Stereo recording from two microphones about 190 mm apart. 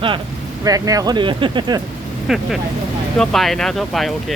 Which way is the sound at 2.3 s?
Centre (ahead or behind).